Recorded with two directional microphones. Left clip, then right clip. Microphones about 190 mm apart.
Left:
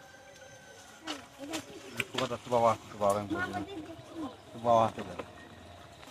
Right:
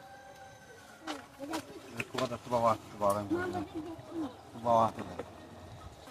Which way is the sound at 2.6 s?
35° left (ahead or behind).